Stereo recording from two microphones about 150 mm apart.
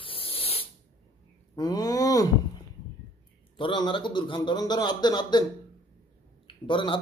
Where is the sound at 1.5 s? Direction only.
25° left (ahead or behind).